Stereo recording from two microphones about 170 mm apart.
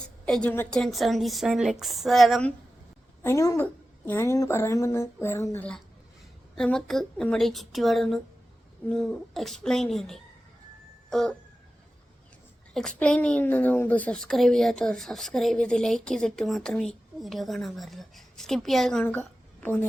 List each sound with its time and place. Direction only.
0.3 s a woman's voice: 5° left (ahead or behind)
3.2 s a woman's voice: 20° left (ahead or behind); by 10.2 s centre (ahead or behind)
11.1 s music: centre (ahead or behind)
12.7 s a woman's voice: 5° left (ahead or behind)